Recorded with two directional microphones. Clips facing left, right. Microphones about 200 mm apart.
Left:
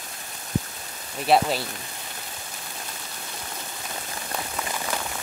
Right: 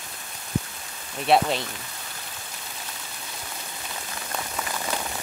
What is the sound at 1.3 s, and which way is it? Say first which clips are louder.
Speech: even; 5° left (ahead or behind).